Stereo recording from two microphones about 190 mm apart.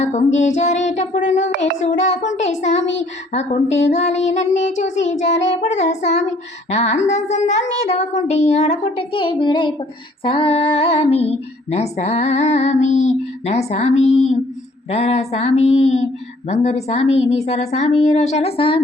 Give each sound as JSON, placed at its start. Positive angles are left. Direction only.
{"t": 0.0, "sound": "speech", "side_deg": 40}